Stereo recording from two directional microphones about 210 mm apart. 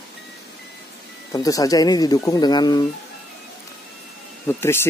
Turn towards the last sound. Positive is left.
turn(degrees=10)  # may be behind; listen again after turning